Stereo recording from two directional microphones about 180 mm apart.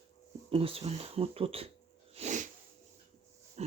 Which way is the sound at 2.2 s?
40° right (ahead or behind).